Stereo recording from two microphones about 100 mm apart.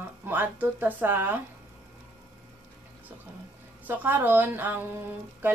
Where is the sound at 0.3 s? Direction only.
20° right (ahead or behind).